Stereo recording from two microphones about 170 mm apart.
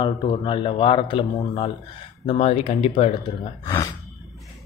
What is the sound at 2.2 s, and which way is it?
Speech, 35° left (ahead or behind).